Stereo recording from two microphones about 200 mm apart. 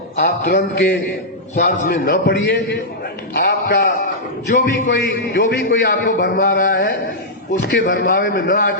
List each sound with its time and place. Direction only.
0.5 s a man's voice: 55° left (ahead or behind)
1.5 s a man's voice: 40° left (ahead or behind)
2.2 s a man's voice: 60° left (ahead or behind)
3.3 s a man's voice: 45° left (ahead or behind)
6.3 s a man's voice: 45° left (ahead or behind)